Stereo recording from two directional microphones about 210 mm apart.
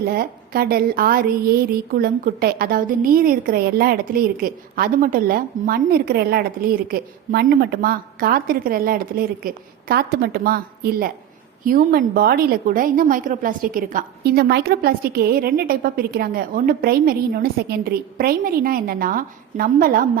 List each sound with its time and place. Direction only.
0.0 s a woman's voice: 45° right (ahead or behind)